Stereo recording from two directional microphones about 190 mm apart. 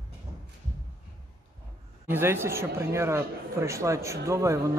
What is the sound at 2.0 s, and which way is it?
Speech, 10° right (ahead or behind).